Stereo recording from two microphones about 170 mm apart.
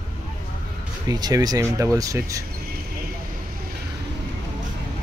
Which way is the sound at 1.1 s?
20° right (ahead or behind).